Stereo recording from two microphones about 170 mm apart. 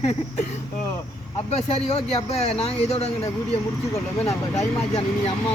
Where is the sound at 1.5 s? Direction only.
40° left (ahead or behind).